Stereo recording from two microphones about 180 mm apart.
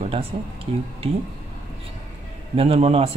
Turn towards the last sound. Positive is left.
turn(degrees=-35)  # may be behind; listen again after turning